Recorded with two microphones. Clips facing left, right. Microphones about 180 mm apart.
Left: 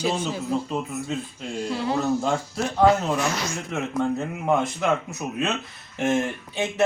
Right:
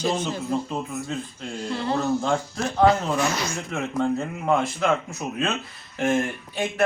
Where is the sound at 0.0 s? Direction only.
10° left (ahead or behind).